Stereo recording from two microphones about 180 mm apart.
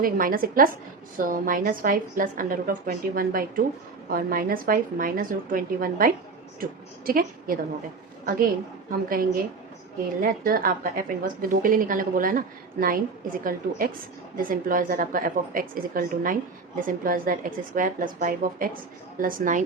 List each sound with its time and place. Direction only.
0.0 s a woman's voice: 50° right (ahead or behind)
8.9 s a woman's voice: 55° right (ahead or behind)